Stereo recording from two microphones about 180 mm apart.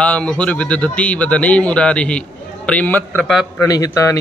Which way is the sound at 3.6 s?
20° left (ahead or behind).